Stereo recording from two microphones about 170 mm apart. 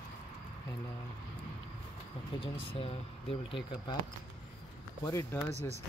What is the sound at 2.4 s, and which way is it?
Speech, 35° left (ahead or behind).